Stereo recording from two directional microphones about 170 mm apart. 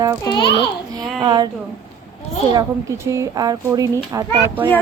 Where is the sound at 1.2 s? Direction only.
25° right (ahead or behind).